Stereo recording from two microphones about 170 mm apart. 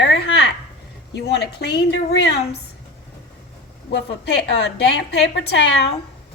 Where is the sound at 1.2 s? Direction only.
75° left (ahead or behind).